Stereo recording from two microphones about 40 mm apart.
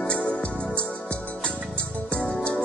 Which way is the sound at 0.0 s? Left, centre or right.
Centre.